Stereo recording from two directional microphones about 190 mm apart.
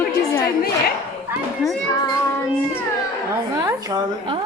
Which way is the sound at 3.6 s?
20° right (ahead or behind).